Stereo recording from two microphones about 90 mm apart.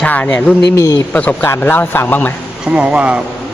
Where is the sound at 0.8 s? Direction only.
40° left (ahead or behind).